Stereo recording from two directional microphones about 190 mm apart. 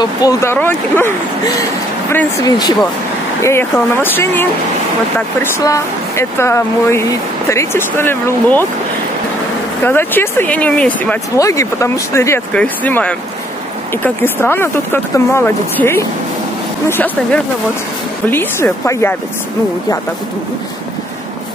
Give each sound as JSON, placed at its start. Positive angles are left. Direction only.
{"t": 0.0, "sound": "speech", "side_deg": 20}
{"t": 9.8, "sound": "speech", "side_deg": 10}